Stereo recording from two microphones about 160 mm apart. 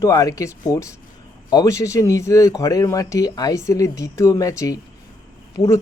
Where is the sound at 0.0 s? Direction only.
20° left (ahead or behind).